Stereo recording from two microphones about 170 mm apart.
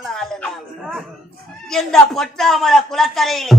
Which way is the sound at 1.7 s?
Centre (ahead or behind).